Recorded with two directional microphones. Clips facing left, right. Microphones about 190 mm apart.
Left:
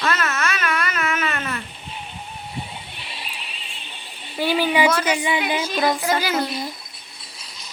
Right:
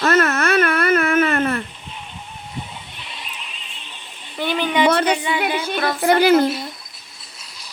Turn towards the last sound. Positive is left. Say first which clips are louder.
# right 8 dB
turn(degrees=-60)  # may be behind; listen again after turning